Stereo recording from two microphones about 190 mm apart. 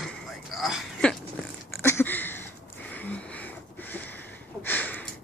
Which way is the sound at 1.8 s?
15° left (ahead or behind).